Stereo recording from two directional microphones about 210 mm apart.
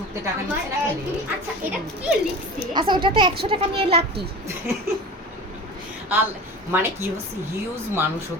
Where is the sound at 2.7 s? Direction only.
20° right (ahead or behind).